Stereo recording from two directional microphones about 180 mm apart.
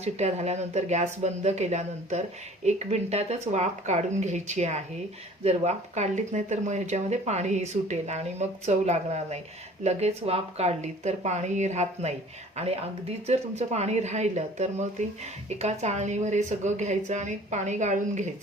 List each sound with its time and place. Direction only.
0.0 s speech: 40° right (ahead or behind)